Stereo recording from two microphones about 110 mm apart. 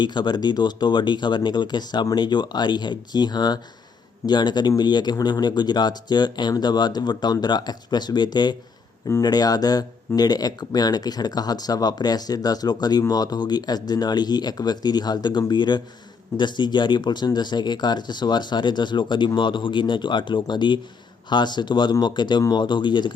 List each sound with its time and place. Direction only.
0.0 s speech: 45° left (ahead or behind)